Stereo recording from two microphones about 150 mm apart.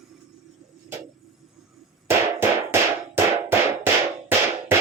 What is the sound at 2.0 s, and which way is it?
Music, 15° right (ahead or behind).